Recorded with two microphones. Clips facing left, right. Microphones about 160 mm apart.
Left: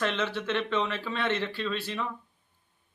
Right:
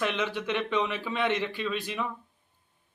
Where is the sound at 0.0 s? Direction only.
15° right (ahead or behind).